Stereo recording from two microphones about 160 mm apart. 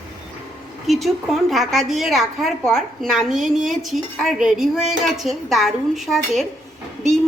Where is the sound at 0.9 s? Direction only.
Centre (ahead or behind).